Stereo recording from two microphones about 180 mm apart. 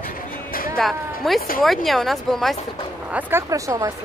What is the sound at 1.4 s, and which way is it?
Speech, 50° left (ahead or behind).